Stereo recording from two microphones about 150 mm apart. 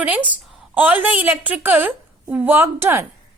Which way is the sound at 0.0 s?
10° right (ahead or behind).